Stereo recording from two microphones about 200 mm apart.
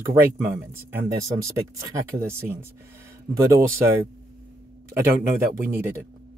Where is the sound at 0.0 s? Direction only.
15° right (ahead or behind).